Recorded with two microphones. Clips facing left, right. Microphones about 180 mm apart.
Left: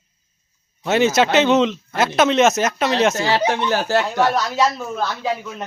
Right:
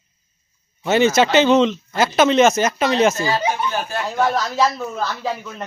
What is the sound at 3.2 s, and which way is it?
Speech, 75° left (ahead or behind).